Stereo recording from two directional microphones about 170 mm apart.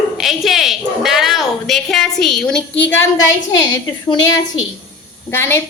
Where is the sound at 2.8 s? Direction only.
15° left (ahead or behind).